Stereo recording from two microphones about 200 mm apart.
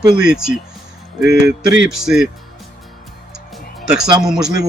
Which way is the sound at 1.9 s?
5° right (ahead or behind).